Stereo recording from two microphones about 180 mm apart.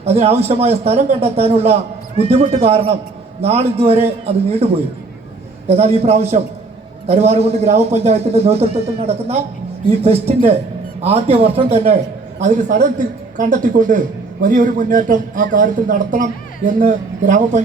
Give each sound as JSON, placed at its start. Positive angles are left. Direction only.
{"t": 0.0, "sound": "a man's voice", "side_deg": -35}